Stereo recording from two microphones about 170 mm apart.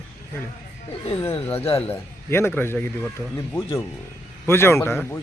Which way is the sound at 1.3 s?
35° left (ahead or behind).